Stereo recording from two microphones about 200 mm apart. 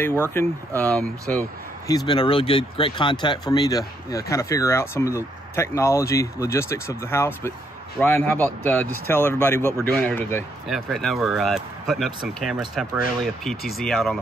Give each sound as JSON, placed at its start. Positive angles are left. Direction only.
{"t": 0.3, "sound": "speech", "side_deg": 10}
{"t": 1.9, "sound": "speech", "side_deg": 20}